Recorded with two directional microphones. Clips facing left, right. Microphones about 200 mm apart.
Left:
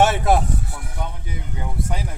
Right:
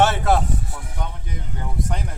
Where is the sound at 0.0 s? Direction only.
10° left (ahead or behind).